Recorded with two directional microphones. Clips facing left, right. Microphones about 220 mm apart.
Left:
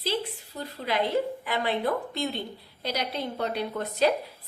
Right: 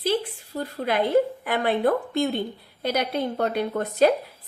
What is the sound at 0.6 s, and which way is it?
A woman's voice, 50° right (ahead or behind).